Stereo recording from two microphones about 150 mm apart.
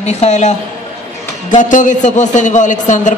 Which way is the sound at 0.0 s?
50° left (ahead or behind).